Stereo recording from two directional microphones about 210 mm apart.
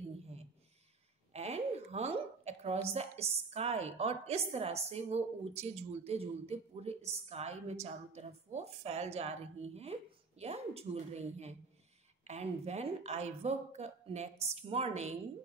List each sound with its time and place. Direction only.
1.3 s a woman's voice: 30° right (ahead or behind)